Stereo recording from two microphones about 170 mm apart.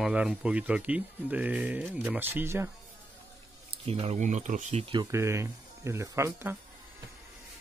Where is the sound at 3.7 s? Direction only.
35° right (ahead or behind).